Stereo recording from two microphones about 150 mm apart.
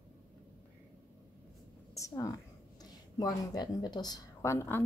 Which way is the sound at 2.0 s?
25° left (ahead or behind).